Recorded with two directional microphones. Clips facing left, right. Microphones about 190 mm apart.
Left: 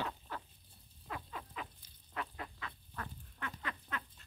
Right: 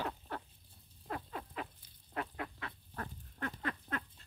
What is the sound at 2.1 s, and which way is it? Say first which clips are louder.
Duck: right 3 dB; 55° right (ahead or behind).